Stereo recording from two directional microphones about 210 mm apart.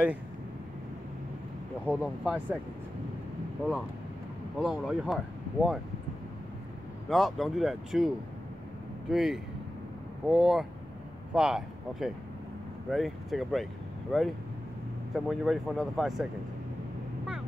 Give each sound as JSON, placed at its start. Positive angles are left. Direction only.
{"t": 1.9, "sound": "speech", "side_deg": -5}
{"t": 4.6, "sound": "speech", "side_deg": 0}
{"t": 7.1, "sound": "speech", "side_deg": 0}
{"t": 9.1, "sound": "speech", "side_deg": 0}